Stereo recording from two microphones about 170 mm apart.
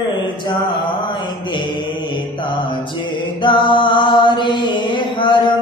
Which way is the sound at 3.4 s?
30° left (ahead or behind).